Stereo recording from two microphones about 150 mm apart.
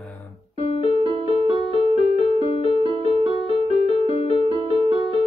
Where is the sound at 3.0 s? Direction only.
40° right (ahead or behind).